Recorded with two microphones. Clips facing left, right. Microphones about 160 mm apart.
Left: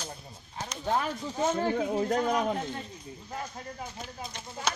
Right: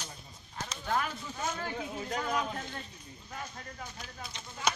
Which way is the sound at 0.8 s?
30° left (ahead or behind).